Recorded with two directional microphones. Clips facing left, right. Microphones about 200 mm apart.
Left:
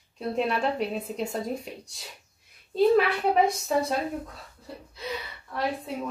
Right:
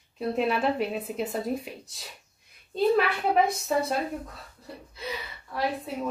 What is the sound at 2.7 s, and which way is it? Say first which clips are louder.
Speech: left 3 dB; centre (ahead or behind).